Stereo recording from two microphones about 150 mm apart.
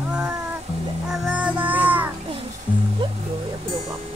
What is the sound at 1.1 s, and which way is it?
Music, 5° right (ahead or behind).